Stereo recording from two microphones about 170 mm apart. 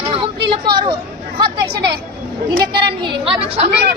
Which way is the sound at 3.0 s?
30° right (ahead or behind).